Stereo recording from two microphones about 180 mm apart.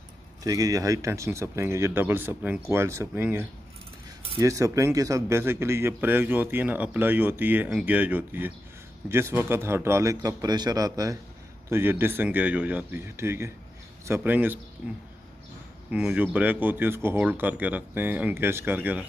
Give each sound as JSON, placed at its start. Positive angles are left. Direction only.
{"t": 0.4, "sound": "speech", "side_deg": -20}